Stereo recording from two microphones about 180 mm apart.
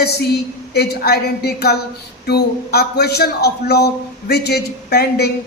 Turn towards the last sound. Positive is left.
turn(degrees=65)  # may be behind; listen again after turning